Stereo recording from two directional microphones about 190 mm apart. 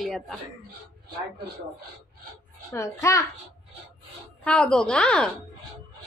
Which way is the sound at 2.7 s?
15° left (ahead or behind).